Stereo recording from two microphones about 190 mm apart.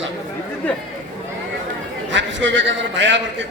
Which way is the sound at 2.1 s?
75° right (ahead or behind).